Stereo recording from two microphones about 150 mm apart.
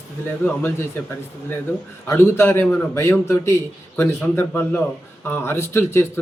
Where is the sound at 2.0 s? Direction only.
15° left (ahead or behind).